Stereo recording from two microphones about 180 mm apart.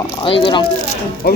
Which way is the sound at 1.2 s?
55° left (ahead or behind).